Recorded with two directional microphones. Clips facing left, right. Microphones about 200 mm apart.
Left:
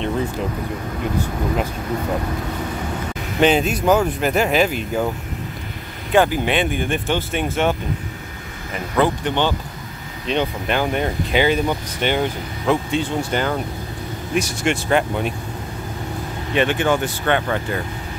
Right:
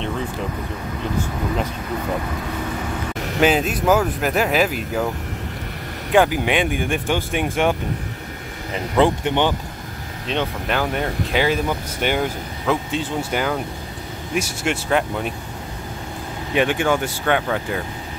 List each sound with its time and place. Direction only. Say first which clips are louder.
3.3 s speech: left 1 dB; 5° right (ahead or behind)
6.1 s speech: even; 10° right (ahead or behind)
8.9 s speech: right 1 dB; 20° right (ahead or behind)
10.2 s speech: left 2 dB; centre (ahead or behind)
16.5 s speech: even; 10° right (ahead or behind)